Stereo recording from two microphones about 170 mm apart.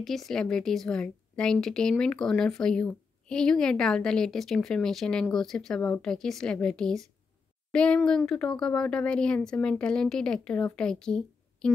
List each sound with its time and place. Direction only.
0.0 s speech: centre (ahead or behind)